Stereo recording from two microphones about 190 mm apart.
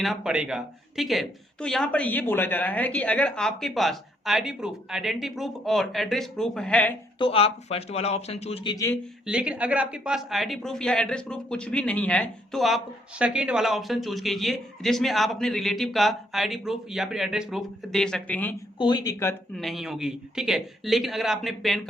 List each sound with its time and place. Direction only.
0.0 s speech: centre (ahead or behind)
7.2 s speech: 30° left (ahead or behind)
8.7 s speech: 15° left (ahead or behind)
9.2 s speech: 5° right (ahead or behind)
18.8 s speech: 20° left (ahead or behind)
19.5 s speech: centre (ahead or behind)